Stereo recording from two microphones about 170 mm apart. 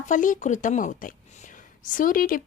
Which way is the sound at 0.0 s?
50° left (ahead or behind).